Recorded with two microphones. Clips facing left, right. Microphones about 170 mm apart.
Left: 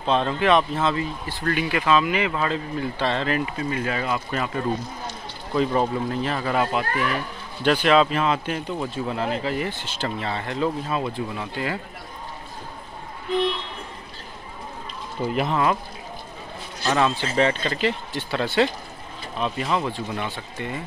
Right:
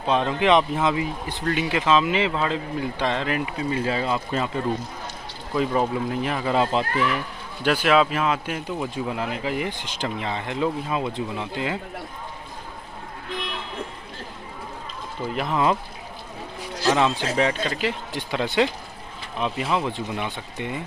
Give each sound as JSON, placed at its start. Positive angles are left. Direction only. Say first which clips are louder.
{"t": 0.0, "sound": "speech", "louder": "even", "side_deg": -15}
{"t": 3.7, "sound": "speech", "louder": "right 3 dB", "side_deg": -30}
{"t": 5.5, "sound": "speech", "louder": "left 1 dB", "side_deg": -5}
{"t": 7.6, "sound": "speech", "louder": "left 1 dB", "side_deg": -5}
{"t": 15.5, "sound": "speech", "louder": "right 3 dB", "side_deg": -20}
{"t": 16.9, "sound": "speech", "louder": "left 1 dB", "side_deg": -15}